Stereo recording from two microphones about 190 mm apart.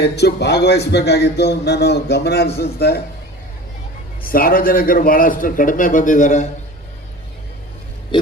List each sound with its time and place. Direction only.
0.0 s speech: 60° left (ahead or behind)
4.2 s a man's voice: 50° left (ahead or behind)